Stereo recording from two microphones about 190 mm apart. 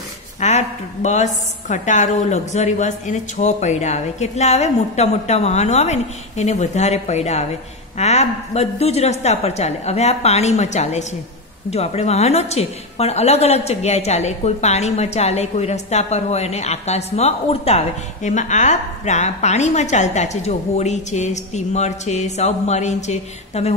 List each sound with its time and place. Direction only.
0.4 s a woman's voice: 35° left (ahead or behind)